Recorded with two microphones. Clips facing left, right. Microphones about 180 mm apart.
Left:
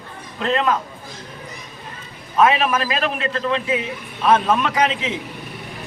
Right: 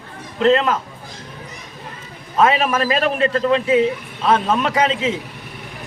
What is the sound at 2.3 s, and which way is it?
A man's voice, 35° right (ahead or behind).